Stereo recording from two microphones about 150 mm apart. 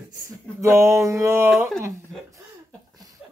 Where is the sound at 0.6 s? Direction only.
20° right (ahead or behind).